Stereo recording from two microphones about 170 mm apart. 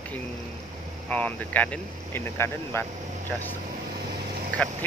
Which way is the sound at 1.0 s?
10° left (ahead or behind).